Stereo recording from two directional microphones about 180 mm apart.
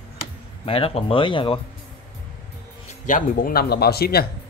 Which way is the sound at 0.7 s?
30° left (ahead or behind).